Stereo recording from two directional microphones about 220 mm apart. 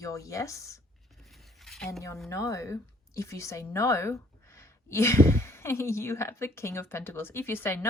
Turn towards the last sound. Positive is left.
turn(degrees=10)  # may be behind; listen again after turning